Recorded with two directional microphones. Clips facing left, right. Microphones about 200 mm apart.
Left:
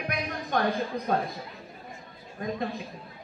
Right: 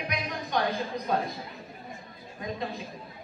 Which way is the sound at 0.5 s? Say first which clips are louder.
Left 1 dB; 50° left (ahead or behind).